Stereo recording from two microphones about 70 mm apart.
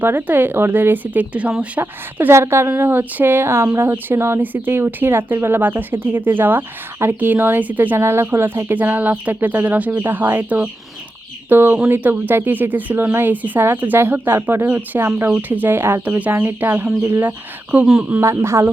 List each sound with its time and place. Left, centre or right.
0.0 s speech: right
1.8 s speech: right
7.9 s speech: right
14.7 s speech: right
15.0 s speech: right
15.3 s speech: right
16.3 s speech: right
18.2 s speech: right